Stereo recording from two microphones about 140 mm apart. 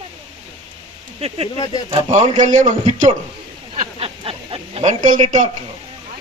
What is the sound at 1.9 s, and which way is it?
A man's voice, 55° right (ahead or behind).